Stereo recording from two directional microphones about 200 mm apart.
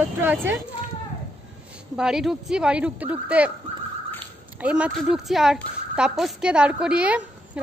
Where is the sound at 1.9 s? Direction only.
5° right (ahead or behind).